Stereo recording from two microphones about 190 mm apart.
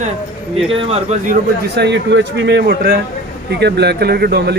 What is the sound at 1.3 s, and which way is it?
A man's voice, 65° right (ahead or behind).